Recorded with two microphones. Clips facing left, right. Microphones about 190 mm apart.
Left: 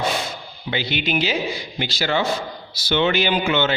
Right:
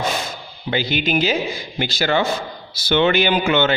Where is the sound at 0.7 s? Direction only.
45° right (ahead or behind).